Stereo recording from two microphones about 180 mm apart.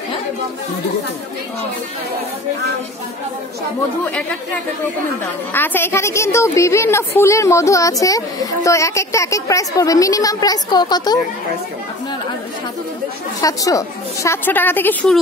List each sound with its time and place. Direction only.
5.5 s a woman's voice: 10° left (ahead or behind)
13.4 s a woman's voice: 20° left (ahead or behind)